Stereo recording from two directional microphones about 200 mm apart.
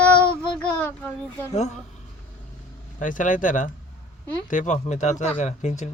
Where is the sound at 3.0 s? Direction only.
40° left (ahead or behind).